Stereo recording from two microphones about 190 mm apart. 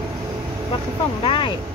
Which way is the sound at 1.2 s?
25° left (ahead or behind).